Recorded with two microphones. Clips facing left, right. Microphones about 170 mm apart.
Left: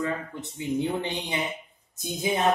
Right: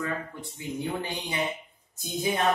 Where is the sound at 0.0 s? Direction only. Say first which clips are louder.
Left 3 dB; 20° left (ahead or behind).